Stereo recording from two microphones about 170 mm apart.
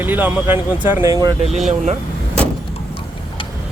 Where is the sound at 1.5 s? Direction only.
45° right (ahead or behind).